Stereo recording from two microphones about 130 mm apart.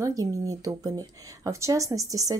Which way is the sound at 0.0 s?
25° right (ahead or behind).